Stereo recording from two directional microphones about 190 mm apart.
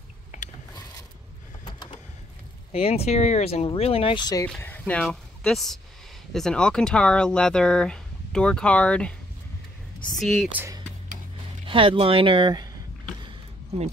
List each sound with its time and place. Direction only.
2.7 s speech: 30° left (ahead or behind)
4.5 s speech: 10° left (ahead or behind)
10.2 s speech: centre (ahead or behind)
11.6 s speech: 25° right (ahead or behind)